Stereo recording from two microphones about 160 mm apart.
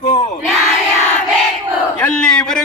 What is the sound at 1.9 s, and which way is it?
Speech, 10° left (ahead or behind).